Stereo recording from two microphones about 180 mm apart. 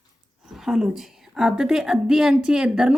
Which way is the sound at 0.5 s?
Centre (ahead or behind).